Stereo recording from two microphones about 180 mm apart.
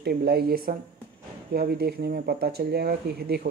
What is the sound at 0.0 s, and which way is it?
Speech, 60° right (ahead or behind).